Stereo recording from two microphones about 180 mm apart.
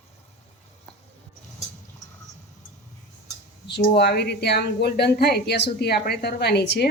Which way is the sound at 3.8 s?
60° left (ahead or behind).